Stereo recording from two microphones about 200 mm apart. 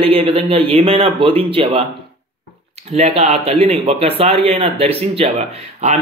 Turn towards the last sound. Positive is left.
turn(degrees=-30)  # may be behind; listen again after turning